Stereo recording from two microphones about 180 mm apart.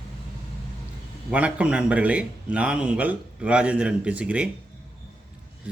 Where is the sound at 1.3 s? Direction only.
5° right (ahead or behind).